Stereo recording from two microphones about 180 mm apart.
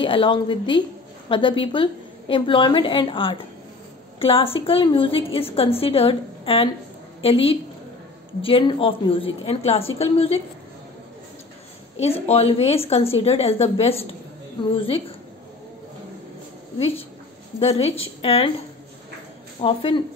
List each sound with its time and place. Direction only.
0.0 s a woman's voice: 25° left (ahead or behind)
12.3 s a woman's voice: 35° left (ahead or behind)
16.7 s a woman's voice: 30° left (ahead or behind)
19.6 s a woman's voice: 30° left (ahead or behind)